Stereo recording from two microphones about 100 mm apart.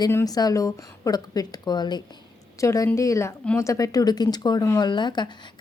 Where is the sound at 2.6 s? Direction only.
30° left (ahead or behind); by 5.3 s 50° left (ahead or behind).